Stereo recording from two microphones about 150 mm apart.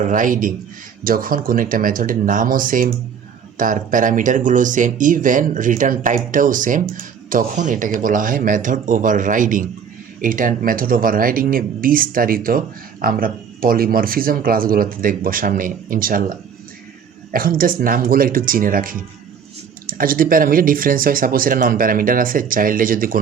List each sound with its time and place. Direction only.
0.0 s speech: 60° right (ahead or behind)